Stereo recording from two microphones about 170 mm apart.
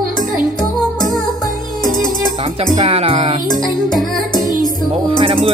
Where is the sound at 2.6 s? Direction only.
35° right (ahead or behind).